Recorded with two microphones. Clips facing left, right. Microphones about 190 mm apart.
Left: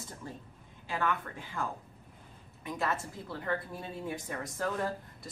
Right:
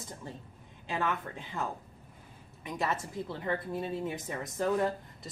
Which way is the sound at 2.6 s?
20° right (ahead or behind).